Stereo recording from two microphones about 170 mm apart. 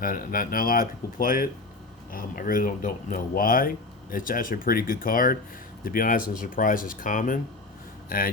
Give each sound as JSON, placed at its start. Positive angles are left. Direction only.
{"t": 0.0, "sound": "speech", "side_deg": 55}